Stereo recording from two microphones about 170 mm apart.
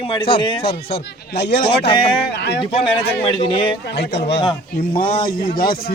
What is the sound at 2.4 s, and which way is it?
Speech, 90° left.